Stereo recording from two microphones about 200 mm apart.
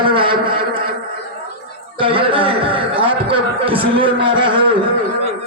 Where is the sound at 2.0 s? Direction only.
25° right (ahead or behind).